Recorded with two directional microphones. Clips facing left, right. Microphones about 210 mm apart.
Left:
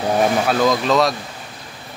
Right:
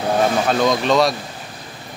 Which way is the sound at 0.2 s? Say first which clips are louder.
Left 1 dB; 5° left (ahead or behind).